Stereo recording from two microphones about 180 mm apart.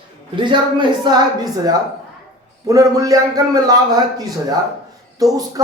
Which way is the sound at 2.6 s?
20° right (ahead or behind).